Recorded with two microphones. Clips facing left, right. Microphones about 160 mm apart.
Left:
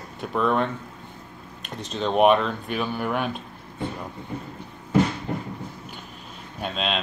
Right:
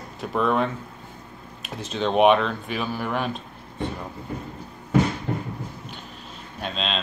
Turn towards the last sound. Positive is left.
turn(degrees=10)  # may be behind; listen again after turning